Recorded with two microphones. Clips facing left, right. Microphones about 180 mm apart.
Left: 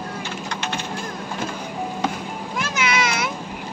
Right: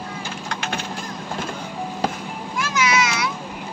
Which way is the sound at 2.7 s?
55° left (ahead or behind).